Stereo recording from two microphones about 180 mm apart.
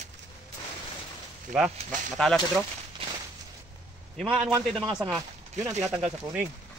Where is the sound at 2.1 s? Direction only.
Centre (ahead or behind).